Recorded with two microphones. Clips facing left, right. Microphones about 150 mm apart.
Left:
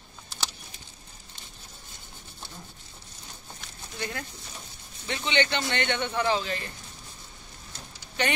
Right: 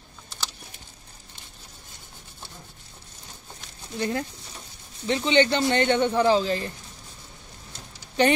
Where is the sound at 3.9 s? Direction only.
30° right (ahead or behind).